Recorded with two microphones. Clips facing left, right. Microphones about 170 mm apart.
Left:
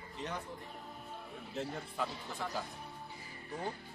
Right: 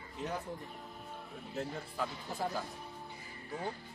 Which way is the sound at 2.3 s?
45° right (ahead or behind).